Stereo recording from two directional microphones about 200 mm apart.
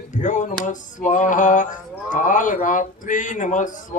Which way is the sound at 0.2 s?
40° left (ahead or behind).